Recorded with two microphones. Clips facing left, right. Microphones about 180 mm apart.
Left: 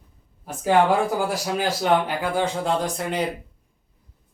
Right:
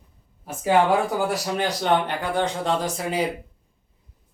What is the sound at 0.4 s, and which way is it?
Speech, centre (ahead or behind).